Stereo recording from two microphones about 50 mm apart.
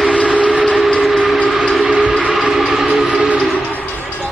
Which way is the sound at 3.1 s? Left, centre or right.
Right.